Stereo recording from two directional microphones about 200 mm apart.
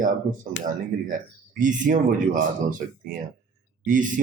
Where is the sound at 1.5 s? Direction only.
40° right (ahead or behind).